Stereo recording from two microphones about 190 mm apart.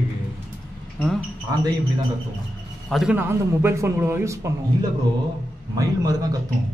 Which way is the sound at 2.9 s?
5° right (ahead or behind).